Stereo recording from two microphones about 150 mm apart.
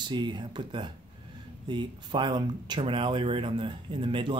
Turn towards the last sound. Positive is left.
turn(degrees=-35)  # may be behind; listen again after turning